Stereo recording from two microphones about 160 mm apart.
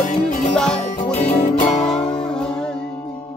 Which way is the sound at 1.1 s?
45° left (ahead or behind).